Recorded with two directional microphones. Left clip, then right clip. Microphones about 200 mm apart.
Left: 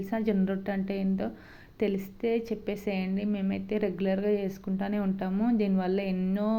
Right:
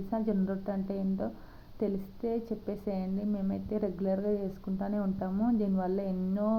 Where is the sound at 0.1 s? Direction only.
35° left (ahead or behind).